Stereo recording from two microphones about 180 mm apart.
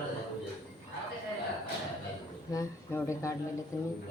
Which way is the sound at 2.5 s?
15° left (ahead or behind).